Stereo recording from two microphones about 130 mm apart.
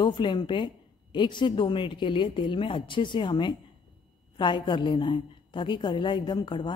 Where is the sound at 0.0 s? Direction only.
35° left (ahead or behind).